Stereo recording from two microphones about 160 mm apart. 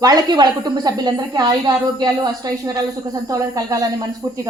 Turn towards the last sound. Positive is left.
turn(degrees=-20)  # may be behind; listen again after turning